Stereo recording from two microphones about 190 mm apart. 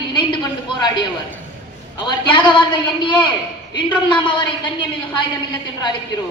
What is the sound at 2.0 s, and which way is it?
A woman's voice, 25° left (ahead or behind).